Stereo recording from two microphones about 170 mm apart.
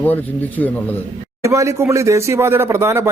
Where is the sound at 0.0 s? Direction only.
10° left (ahead or behind).